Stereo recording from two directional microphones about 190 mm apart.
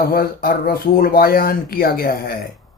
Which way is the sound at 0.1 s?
50° left (ahead or behind).